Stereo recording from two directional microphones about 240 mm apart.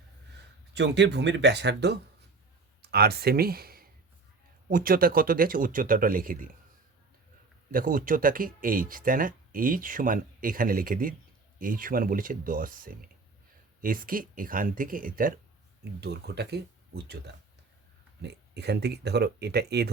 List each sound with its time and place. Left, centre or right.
0.7 s speech: right
7.7 s speech: right